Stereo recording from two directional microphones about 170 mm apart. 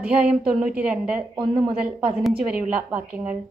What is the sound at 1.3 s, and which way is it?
Speech, 30° right (ahead or behind).